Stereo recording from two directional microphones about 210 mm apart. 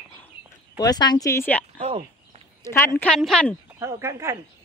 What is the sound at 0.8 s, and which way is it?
Speech, 20° left (ahead or behind).